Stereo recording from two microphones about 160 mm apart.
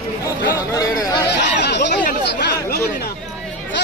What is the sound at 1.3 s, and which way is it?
Chatter, 90° left.